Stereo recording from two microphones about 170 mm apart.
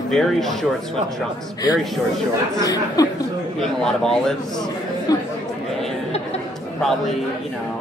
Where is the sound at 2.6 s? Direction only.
20° left (ahead or behind).